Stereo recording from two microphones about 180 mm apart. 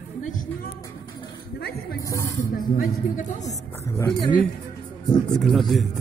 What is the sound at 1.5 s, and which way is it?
Speech, 60° left (ahead or behind).